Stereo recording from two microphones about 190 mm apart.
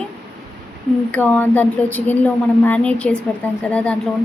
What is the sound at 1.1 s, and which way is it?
A woman's voice, 10° left (ahead or behind).